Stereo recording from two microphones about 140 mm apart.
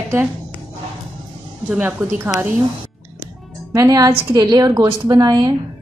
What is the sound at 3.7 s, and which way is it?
A woman's voice, 25° right (ahead or behind).